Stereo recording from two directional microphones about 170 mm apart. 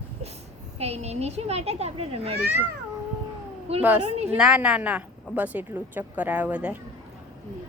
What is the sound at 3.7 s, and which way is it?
Speech, 35° right (ahead or behind).